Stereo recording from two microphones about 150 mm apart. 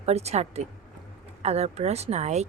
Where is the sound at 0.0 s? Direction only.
45° right (ahead or behind).